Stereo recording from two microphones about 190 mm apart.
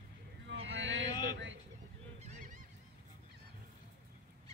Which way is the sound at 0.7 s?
75° right (ahead or behind).